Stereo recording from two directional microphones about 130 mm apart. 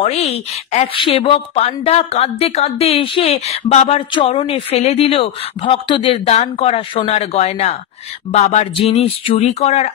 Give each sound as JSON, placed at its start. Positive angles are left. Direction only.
{"t": 0.0, "sound": "speech", "side_deg": 50}
{"t": 0.9, "sound": "speech", "side_deg": 45}
{"t": 6.2, "sound": "speech", "side_deg": 60}
{"t": 8.3, "sound": "speech", "side_deg": 65}
{"t": 8.7, "sound": "speech", "side_deg": 50}